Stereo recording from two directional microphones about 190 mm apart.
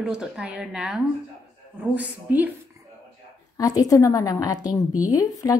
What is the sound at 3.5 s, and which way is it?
A woman's voice, 20° left (ahead or behind).